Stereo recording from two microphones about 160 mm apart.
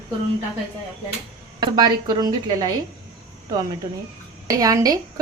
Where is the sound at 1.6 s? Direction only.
30° right (ahead or behind).